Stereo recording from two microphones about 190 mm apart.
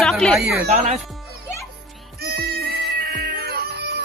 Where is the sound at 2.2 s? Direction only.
55° right (ahead or behind).